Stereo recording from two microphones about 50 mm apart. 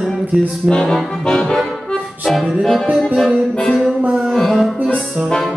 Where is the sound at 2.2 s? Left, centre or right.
Centre.